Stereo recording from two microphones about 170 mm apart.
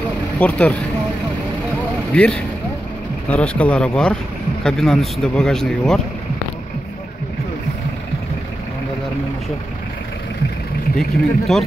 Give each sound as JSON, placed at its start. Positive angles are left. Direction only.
{"t": 0.4, "sound": "speech", "side_deg": 10}
{"t": 2.1, "sound": "speech", "side_deg": 5}
{"t": 11.0, "sound": "speech", "side_deg": 0}